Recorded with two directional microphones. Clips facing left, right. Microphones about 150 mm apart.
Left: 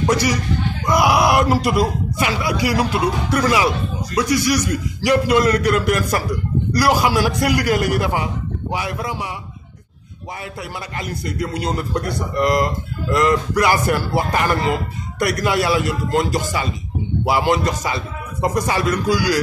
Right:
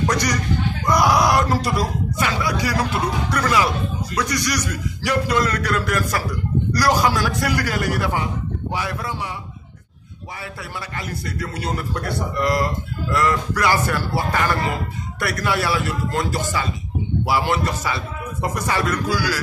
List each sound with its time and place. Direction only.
0.0 s speech: 10° left (ahead or behind)
11.0 s speech: 15° left (ahead or behind)